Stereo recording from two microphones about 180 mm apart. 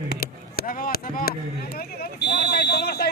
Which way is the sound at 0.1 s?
55° left (ahead or behind).